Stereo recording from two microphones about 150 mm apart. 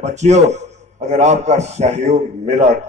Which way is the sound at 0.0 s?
50° right (ahead or behind).